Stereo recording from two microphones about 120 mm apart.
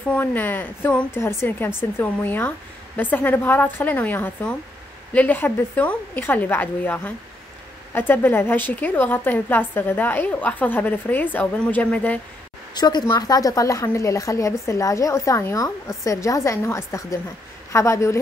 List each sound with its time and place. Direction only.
0.1 s a woman's voice: 15° left (ahead or behind)
12.7 s a woman's voice: 35° left (ahead or behind)